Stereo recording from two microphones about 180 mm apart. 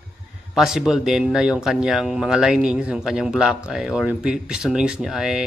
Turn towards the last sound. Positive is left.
turn(degrees=-5)  # may be behind; listen again after turning